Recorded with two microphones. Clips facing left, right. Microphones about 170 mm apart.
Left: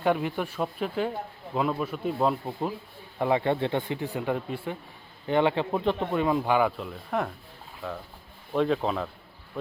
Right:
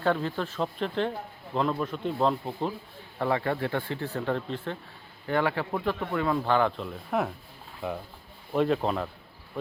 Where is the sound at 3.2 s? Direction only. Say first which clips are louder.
Left 3 dB; 20° left (ahead or behind).